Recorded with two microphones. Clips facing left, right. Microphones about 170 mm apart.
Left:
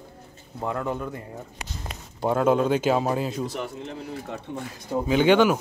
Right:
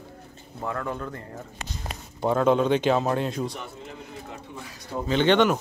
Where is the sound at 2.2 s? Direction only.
5° left (ahead or behind).